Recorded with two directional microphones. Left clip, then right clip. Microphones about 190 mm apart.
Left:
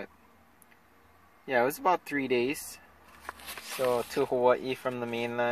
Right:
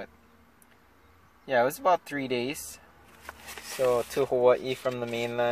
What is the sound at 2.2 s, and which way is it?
Speech, 35° left (ahead or behind).